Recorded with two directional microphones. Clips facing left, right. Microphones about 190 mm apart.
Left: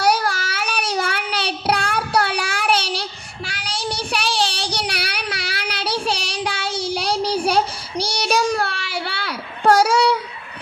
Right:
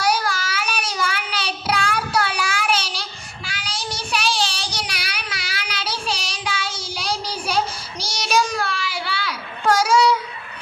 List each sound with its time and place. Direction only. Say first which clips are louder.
0.0 s child singing: left 3 dB; 60° left (ahead or behind)